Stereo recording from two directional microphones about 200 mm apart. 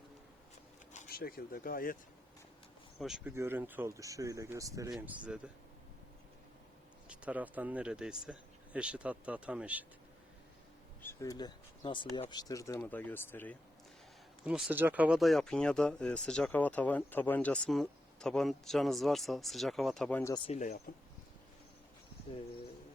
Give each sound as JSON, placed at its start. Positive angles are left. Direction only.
{"t": 0.9, "sound": "speech", "side_deg": 50}
{"t": 3.0, "sound": "speech", "side_deg": 0}
{"t": 7.1, "sound": "speech", "side_deg": -5}
{"t": 11.0, "sound": "speech", "side_deg": 15}
{"t": 14.4, "sound": "speech", "side_deg": -5}
{"t": 20.3, "sound": "speech", "side_deg": 25}
{"t": 20.6, "sound": "speech", "side_deg": 45}